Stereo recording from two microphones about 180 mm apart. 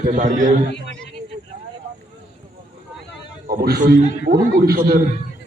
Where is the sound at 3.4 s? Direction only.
55° right (ahead or behind).